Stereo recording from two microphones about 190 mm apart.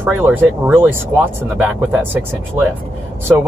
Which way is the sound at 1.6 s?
10° right (ahead or behind).